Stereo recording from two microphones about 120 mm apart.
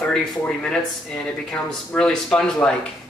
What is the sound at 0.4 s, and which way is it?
Speech, 5° left (ahead or behind).